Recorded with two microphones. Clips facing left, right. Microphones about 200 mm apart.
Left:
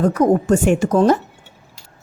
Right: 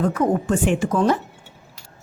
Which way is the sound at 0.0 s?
40° left (ahead or behind).